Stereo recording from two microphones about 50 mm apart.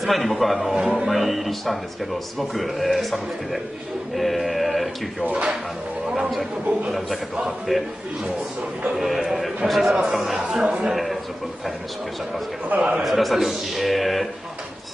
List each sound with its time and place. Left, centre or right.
0.0 s a man's voice: centre
0.7 s speech: centre
1.0 s a man's voice: centre
7.4 s a man's voice: centre
8.9 s a man's voice: centre
10.6 s a man's voice: right
10.9 s a man's voice: centre
12.6 s a man's voice: right
13.0 s a man's voice: centre